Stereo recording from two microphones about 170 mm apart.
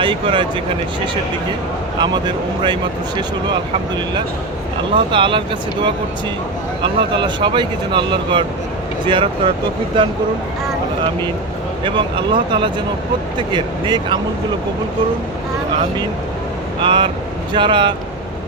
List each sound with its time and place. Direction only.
0.0 s speech: 30° right (ahead or behind)
2.0 s speech: 25° right (ahead or behind)
6.8 s speech: 30° right (ahead or behind)
11.9 s speech: 30° right (ahead or behind)
16.8 s speech: 30° right (ahead or behind)